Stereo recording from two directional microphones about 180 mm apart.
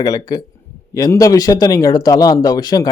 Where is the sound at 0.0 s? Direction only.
20° left (ahead or behind).